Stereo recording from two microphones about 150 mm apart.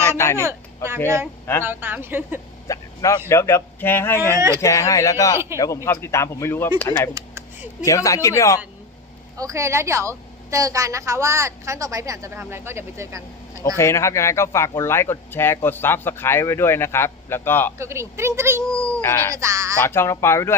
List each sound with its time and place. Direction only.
0.0 s a sound: 20° left (ahead or behind)
1.6 s speech: 15° right (ahead or behind)
2.6 s a man's voice: 20° left (ahead or behind)
7.1 s a sound: 20° right (ahead or behind)
7.8 s speech: 20° left (ahead or behind)
9.4 s a woman's voice: 20° right (ahead or behind)
13.7 s speech: 20° left (ahead or behind)
17.7 s speech: 20° right (ahead or behind)
18.6 s speech: 5° left (ahead or behind)
19.3 s a woman's voice: 20° right (ahead or behind)
19.8 s speech: 15° left (ahead or behind)